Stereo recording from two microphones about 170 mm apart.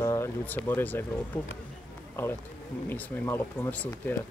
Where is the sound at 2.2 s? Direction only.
10° left (ahead or behind).